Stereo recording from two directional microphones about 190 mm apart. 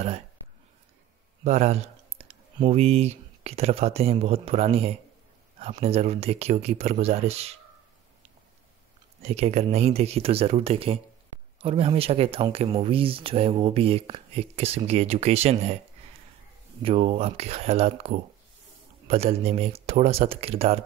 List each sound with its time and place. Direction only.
1.4 s speech: 35° right (ahead or behind)
9.2 s speech: 35° right (ahead or behind)
16.8 s speech: 30° right (ahead or behind)